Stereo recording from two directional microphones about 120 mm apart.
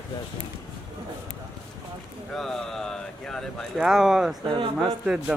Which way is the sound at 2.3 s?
5° left (ahead or behind).